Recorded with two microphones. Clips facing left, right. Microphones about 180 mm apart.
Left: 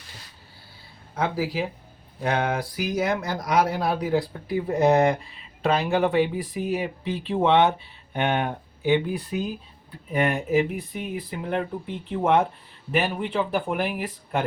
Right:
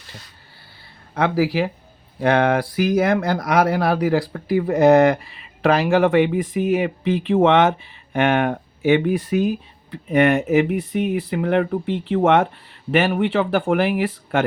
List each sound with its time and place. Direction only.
1.1 s speech: 75° right (ahead or behind); by 12.5 s 90° right
12.9 s speech: 80° right